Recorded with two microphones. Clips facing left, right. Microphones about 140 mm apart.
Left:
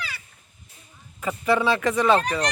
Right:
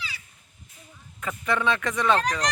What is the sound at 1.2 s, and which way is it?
Speech, 5° left (ahead or behind).